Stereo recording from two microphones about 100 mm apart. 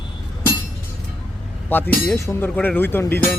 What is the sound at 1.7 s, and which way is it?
Speech, 20° left (ahead or behind).